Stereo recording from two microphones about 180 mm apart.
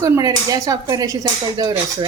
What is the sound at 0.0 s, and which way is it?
Speech, 20° right (ahead or behind).